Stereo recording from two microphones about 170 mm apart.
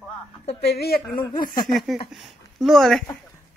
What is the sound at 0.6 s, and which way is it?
Speech, 75° left (ahead or behind).